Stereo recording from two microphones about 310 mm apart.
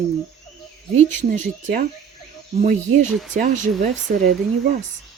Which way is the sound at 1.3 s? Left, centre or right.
Right.